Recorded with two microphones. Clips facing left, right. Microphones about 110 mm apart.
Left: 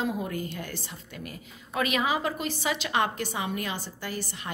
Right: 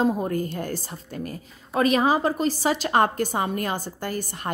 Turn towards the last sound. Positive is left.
turn(degrees=-50)  # may be behind; listen again after turning